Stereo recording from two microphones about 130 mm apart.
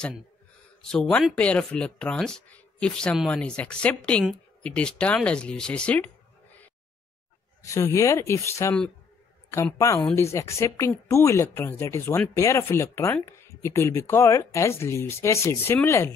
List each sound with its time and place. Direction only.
0.8 s speech: 5° left (ahead or behind)
7.6 s speech: 25° left (ahead or behind)
9.8 s speech: 25° left (ahead or behind)